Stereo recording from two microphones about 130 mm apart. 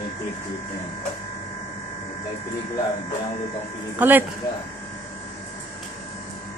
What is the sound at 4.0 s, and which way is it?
Speech, 15° right (ahead or behind).